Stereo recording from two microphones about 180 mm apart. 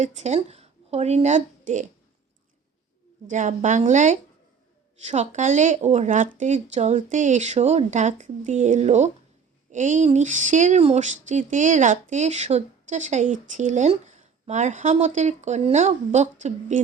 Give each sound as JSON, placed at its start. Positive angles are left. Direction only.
{"t": 0.0, "sound": "a woman's voice", "side_deg": -40}
{"t": 3.2, "sound": "speech", "side_deg": -45}